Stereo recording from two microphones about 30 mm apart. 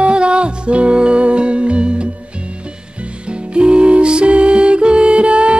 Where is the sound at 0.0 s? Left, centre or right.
Right.